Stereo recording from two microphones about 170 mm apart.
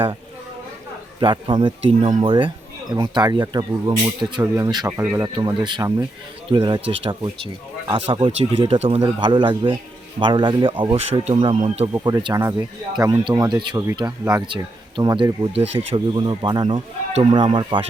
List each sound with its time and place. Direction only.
1.2 s speech: 30° right (ahead or behind)
4.9 s speech: 10° right (ahead or behind)
5.6 s speech: 25° right (ahead or behind)
11.5 s speech: 45° right (ahead or behind)
11.9 s speech: 20° right (ahead or behind)
14.0 s speech: 15° right (ahead or behind)
14.3 s speech: 30° right (ahead or behind)